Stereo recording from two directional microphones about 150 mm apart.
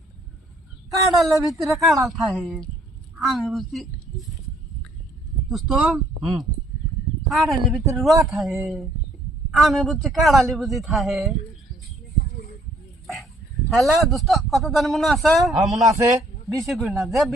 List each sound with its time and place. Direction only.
1.1 s speech: centre (ahead or behind)
5.5 s speech: centre (ahead or behind)
13.7 s speech: centre (ahead or behind)